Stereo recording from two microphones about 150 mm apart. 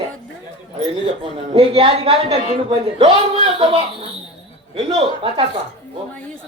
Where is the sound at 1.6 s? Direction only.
40° right (ahead or behind).